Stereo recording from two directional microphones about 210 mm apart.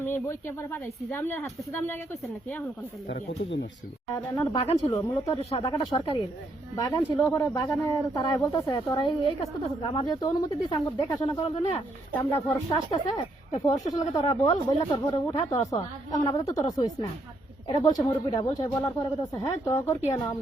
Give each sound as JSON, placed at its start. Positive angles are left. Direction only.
{"t": 0.0, "sound": "speech", "side_deg": 10}
{"t": 3.1, "sound": "speech", "side_deg": 55}
{"t": 4.1, "sound": "speech", "side_deg": 10}
{"t": 4.5, "sound": "speech", "side_deg": 30}
{"t": 12.1, "sound": "speech", "side_deg": 10}